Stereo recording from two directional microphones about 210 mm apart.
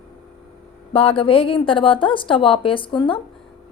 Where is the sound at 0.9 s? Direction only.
25° left (ahead or behind).